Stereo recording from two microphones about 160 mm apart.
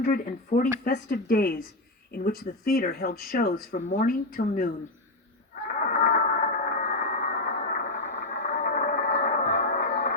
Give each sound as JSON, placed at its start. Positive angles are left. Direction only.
{"t": 0.0, "sound": "a woman's voice", "side_deg": 55}
{"t": 3.8, "sound": "a woman's voice", "side_deg": 55}
{"t": 5.6, "sound": "a sound", "side_deg": 60}